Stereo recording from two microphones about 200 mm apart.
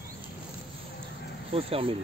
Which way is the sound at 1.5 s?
30° right (ahead or behind).